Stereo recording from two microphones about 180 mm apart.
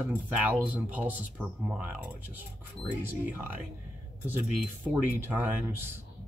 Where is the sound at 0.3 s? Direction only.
10° right (ahead or behind).